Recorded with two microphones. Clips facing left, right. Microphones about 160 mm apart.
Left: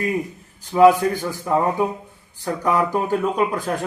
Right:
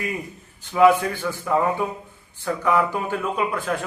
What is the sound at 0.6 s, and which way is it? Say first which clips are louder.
A man's voice: left 3 dB; 35° left (ahead or behind).